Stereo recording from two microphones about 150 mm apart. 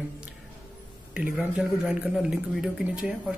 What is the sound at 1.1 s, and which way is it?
Speech, 10° right (ahead or behind).